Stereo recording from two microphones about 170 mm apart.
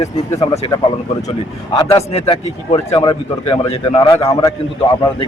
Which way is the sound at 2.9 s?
25° left (ahead or behind).